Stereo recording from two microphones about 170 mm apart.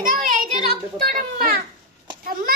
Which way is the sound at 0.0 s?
55° right (ahead or behind).